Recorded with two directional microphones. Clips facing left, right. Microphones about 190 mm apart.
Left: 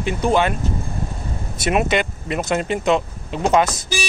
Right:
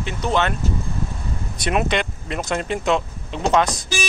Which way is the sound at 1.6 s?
5° left (ahead or behind).